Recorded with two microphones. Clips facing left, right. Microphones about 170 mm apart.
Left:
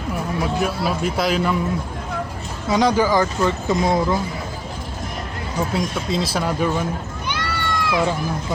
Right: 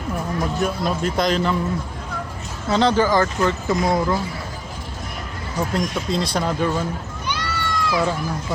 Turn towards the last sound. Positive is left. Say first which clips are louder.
# left 1 dB
turn(degrees=60)  # may be behind; listen again after turning